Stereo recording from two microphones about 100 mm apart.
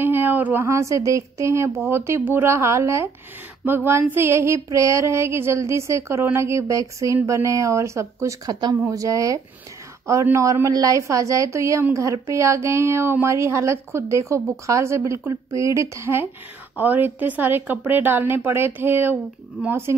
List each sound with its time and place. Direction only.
0.0 s a woman's voice: 20° right (ahead or behind)
8.5 s speech: 45° right (ahead or behind)
8.8 s a woman's voice: 35° right (ahead or behind)